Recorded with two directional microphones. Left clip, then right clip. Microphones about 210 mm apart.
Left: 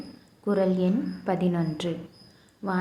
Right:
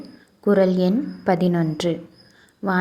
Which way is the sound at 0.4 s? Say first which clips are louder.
Right 7 dB; 30° right (ahead or behind).